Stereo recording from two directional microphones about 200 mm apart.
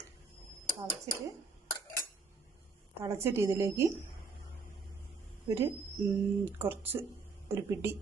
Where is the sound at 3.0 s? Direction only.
15° right (ahead or behind).